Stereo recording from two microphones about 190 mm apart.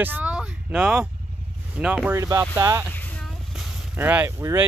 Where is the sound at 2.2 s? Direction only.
15° right (ahead or behind).